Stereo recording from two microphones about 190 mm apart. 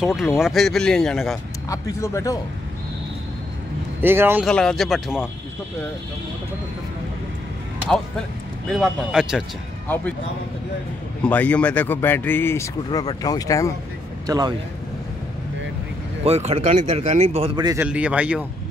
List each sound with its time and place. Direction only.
0.0 s speech: centre (ahead or behind)
1.7 s speech: 15° left (ahead or behind)
4.0 s a man's voice: 10° right (ahead or behind)
4.5 s speech: 5° left (ahead or behind)
8.6 s speech: centre (ahead or behind)
11.2 s speech: 5° left (ahead or behind)
14.2 s speech: 20° right (ahead or behind)
16.3 s speech: 35° right (ahead or behind)
17.8 s a man's voice: 5° right (ahead or behind)